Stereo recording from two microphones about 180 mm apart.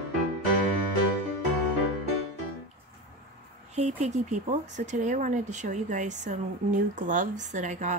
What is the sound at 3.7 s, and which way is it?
Speech, 40° right (ahead or behind).